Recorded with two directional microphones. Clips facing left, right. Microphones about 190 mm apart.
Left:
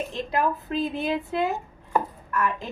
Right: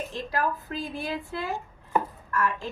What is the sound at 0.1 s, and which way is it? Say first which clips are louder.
A woman's voice: left 3 dB; 20° left (ahead or behind).